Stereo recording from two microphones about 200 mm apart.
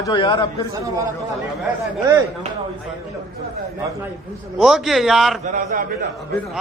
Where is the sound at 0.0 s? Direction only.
20° left (ahead or behind).